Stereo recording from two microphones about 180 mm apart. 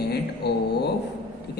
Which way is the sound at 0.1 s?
65° left (ahead or behind).